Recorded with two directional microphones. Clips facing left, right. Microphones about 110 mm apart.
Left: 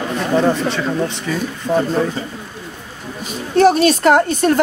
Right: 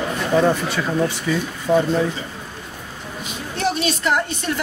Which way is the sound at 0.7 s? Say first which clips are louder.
Left 1 dB; 5° right (ahead or behind).